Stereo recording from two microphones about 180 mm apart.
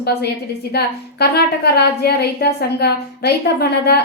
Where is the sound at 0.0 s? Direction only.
65° left (ahead or behind).